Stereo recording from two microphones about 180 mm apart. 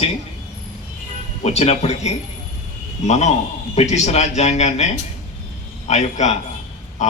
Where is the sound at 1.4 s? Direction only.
35° left (ahead or behind).